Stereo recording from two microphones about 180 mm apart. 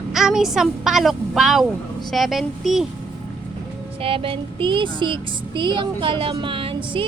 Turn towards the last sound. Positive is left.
turn(degrees=-30)  # may be behind; listen again after turning